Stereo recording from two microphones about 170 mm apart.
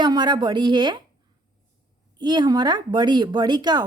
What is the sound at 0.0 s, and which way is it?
Speech, 25° right (ahead or behind).